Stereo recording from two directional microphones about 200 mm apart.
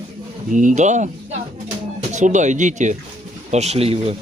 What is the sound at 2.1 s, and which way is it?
Speech, 35° right (ahead or behind).